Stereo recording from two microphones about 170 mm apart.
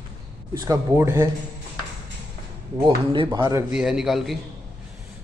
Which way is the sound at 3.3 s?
25° right (ahead or behind).